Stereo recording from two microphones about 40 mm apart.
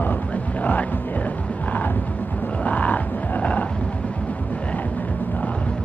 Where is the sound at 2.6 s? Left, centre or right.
Left.